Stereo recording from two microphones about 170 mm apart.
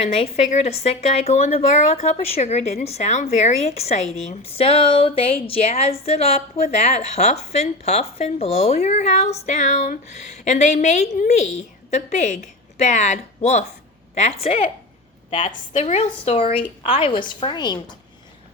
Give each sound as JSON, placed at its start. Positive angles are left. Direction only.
{"t": 0.0, "sound": "a woman's voice", "side_deg": 35}